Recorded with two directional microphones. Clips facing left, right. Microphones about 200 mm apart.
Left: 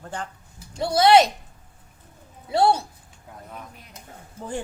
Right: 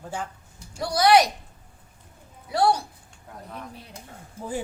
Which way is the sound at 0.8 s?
25° left (ahead or behind).